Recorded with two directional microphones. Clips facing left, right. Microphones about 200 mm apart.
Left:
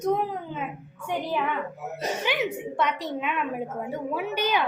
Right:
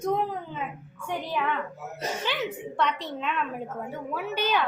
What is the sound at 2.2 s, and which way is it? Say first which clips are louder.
A woman's voice: left 4 dB; 15° left (ahead or behind).